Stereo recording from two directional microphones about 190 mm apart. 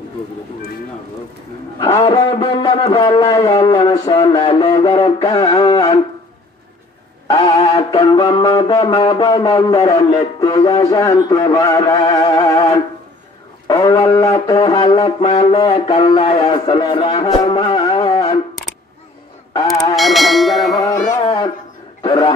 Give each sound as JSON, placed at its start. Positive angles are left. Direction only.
{"t": 1.8, "sound": "a man's voice", "side_deg": 20}
{"t": 4.9, "sound": "music", "side_deg": 20}
{"t": 7.2, "sound": "music", "side_deg": 25}
{"t": 19.5, "sound": "music", "side_deg": 20}
{"t": 20.0, "sound": "bell", "side_deg": 0}
{"t": 20.9, "sound": "speech", "side_deg": 40}
{"t": 22.0, "sound": "speech", "side_deg": 25}